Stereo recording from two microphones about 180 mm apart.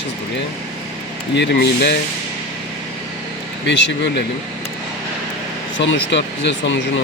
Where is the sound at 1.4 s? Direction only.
70° left (ahead or behind).